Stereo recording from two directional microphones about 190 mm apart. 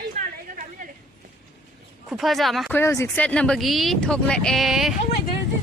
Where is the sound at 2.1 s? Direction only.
Centre (ahead or behind).